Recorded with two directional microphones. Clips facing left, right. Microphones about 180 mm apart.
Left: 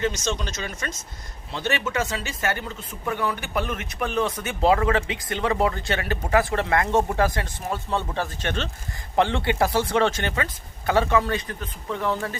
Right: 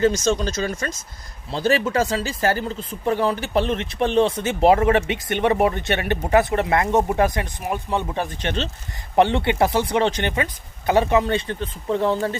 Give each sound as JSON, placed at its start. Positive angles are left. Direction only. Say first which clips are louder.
{"t": 0.0, "sound": "speech", "louder": "right 7 dB", "side_deg": -35}